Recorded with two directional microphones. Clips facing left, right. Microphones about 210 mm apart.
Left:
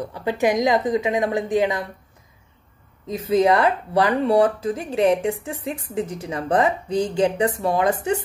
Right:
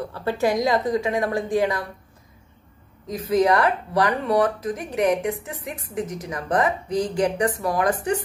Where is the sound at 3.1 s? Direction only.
25° left (ahead or behind).